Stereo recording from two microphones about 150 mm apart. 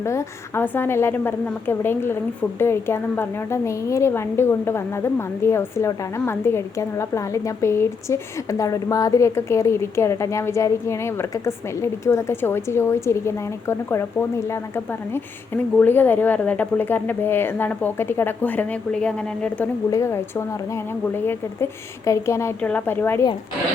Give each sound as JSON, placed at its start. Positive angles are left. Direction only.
{"t": 0.0, "sound": "a woman's voice", "side_deg": 20}
{"t": 19.9, "sound": "a woman's voice", "side_deg": 20}